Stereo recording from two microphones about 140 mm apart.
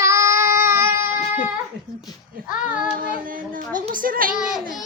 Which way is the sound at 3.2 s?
80° right.